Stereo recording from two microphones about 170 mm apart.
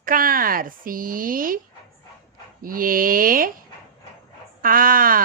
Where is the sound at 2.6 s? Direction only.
55° right (ahead or behind).